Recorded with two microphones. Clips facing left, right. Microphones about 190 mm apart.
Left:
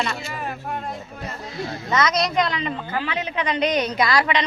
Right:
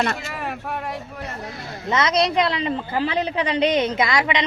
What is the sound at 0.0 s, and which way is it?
Speech, 60° right (ahead or behind).